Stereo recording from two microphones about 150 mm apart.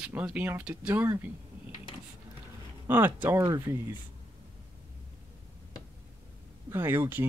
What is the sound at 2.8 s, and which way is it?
Speech, 15° right (ahead or behind).